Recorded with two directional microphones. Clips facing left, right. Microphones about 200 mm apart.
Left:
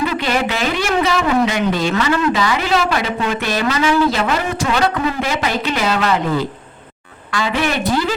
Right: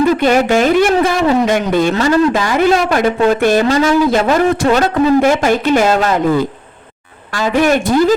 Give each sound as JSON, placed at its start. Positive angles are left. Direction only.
{"t": 0.1, "sound": "speech", "side_deg": -45}
{"t": 7.3, "sound": "speech", "side_deg": -45}